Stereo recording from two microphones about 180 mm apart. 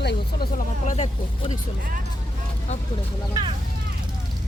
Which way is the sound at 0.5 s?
45° left (ahead or behind).